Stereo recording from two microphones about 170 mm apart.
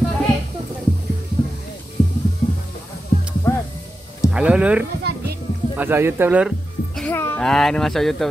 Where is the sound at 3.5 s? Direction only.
15° left (ahead or behind).